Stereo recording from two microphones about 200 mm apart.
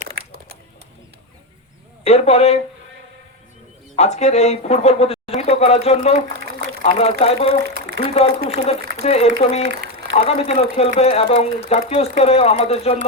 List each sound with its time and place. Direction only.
2.0 s speech: 30° left (ahead or behind)
3.9 s speech: 35° left (ahead or behind)
7.9 s a sound: 60° right (ahead or behind)
8.4 s speech: 30° left (ahead or behind)